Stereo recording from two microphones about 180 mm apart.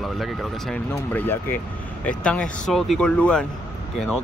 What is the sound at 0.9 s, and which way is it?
Speech, 10° left (ahead or behind).